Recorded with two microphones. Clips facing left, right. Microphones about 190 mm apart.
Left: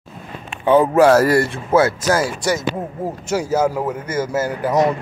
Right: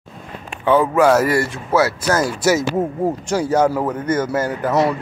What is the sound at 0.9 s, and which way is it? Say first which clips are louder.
Speech: left 2 dB; 35° left (ahead or behind).